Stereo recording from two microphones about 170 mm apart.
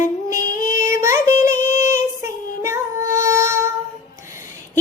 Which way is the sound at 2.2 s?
15° right (ahead or behind).